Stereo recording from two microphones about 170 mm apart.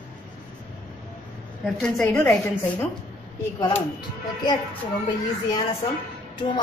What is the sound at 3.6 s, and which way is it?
Speech, 25° left (ahead or behind).